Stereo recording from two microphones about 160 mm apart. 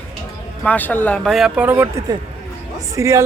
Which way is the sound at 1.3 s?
Centre (ahead or behind).